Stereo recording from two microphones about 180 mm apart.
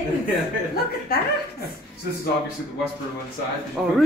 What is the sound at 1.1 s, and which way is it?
Speech, 60° left (ahead or behind).